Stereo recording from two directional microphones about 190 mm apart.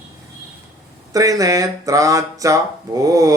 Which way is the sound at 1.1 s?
20° right (ahead or behind).